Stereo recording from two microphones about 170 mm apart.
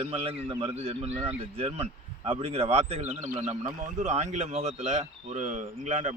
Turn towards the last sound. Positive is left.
turn(degrees=-45)  # may be behind; listen again after turning